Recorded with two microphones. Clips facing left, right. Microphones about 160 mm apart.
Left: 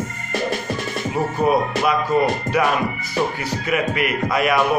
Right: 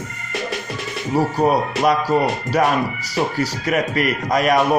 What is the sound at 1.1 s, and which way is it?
A man's voice, 35° right (ahead or behind).